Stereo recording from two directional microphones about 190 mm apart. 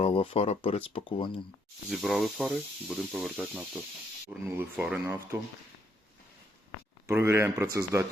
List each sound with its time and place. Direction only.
0.0 s speech: 30° left (ahead or behind)
1.9 s speech: centre (ahead or behind)
7.1 s speech: 15° right (ahead or behind)